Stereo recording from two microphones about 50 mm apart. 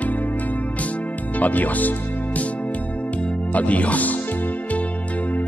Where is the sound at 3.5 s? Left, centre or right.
Left.